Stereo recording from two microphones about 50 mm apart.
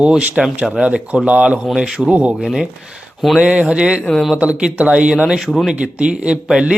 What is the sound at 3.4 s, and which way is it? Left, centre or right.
Speech, right.